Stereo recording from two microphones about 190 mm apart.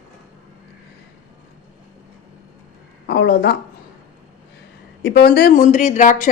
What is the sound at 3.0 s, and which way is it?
Speech, 60° left (ahead or behind).